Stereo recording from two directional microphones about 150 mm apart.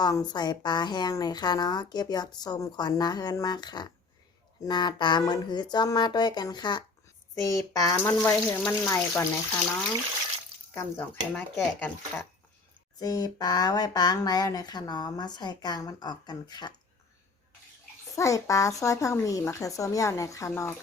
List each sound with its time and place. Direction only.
0.0 s a woman's voice: 25° left (ahead or behind); by 9.2 s 10° left (ahead or behind)
10.8 s speech: 15° left (ahead or behind)
13.0 s a woman's voice: 25° left (ahead or behind)
18.2 s a woman's voice: 20° left (ahead or behind)